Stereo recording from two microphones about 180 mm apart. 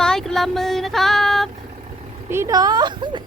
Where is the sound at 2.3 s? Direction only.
15° right (ahead or behind).